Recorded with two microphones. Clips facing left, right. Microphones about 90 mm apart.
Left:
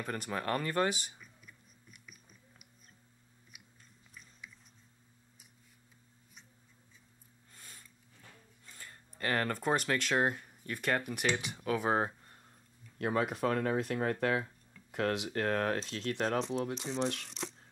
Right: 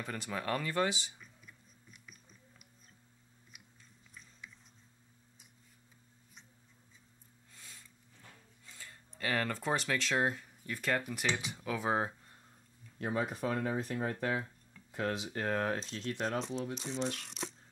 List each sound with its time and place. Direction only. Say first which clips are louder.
0.0 s speech: left 2 dB; 50° left (ahead or behind)
1.2 s a sound: even; 5° left (ahead or behind)
7.5 s sniff: left 1 dB; 50° left (ahead or behind)
8.6 s a sound: left 1 dB; 50° left (ahead or behind)
9.2 s speech: left 2 dB; 50° left (ahead or behind)
13.0 s speech: left 3 dB; 70° left (ahead or behind)
17.0 s speech: left 3 dB; 65° left (ahead or behind)
17.3 s shuffling cards: left 1 dB; 5° right (ahead or behind)